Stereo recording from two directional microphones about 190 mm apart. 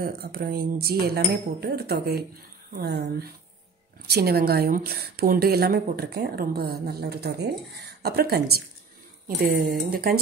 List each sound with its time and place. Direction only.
0.0 s a woman's voice: 50° right (ahead or behind)